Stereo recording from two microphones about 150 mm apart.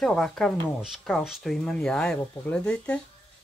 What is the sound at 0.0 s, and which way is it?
Speech, 5° left (ahead or behind).